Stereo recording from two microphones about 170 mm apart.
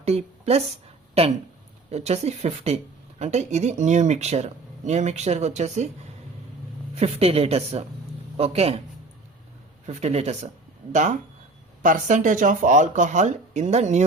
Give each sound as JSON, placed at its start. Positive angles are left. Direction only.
{"t": 0.0, "sound": "speech", "side_deg": -35}
{"t": 6.9, "sound": "speech", "side_deg": -35}
{"t": 9.8, "sound": "speech", "side_deg": -40}